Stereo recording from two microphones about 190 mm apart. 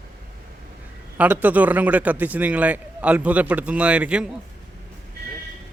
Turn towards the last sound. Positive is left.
turn(degrees=-5)  # may be behind; listen again after turning